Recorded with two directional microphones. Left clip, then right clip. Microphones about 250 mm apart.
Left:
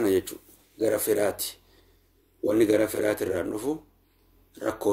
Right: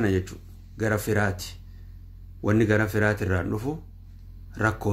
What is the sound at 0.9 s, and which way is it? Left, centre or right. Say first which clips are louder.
Speech: even; right.